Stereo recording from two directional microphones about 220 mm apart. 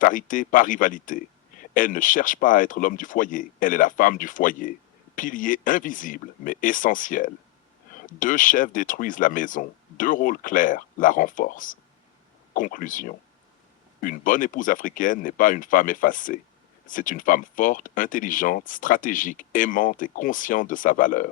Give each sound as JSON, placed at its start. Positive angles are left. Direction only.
{"t": 0.0, "sound": "speech", "side_deg": 35}